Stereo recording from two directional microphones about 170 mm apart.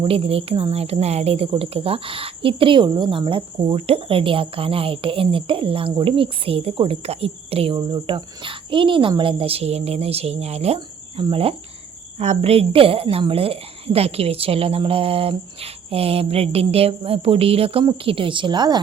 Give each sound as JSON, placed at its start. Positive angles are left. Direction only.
{"t": 0.0, "sound": "speech", "side_deg": -35}
{"t": 10.8, "sound": "cricket", "side_deg": -30}
{"t": 12.2, "sound": "speech", "side_deg": -40}